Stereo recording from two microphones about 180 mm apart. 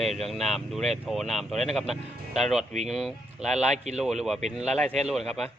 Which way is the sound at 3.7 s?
40° right (ahead or behind).